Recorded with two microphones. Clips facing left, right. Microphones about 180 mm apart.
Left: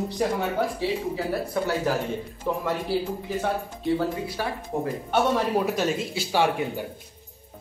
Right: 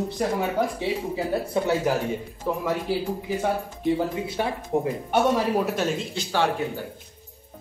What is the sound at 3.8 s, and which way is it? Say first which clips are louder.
Speech: even; 20° right (ahead or behind).